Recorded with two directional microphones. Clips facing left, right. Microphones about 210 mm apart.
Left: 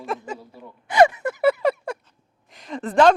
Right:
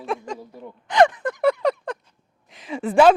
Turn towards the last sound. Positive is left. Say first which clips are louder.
# right 1 dB
turn(degrees=-10)  # may be behind; listen again after turning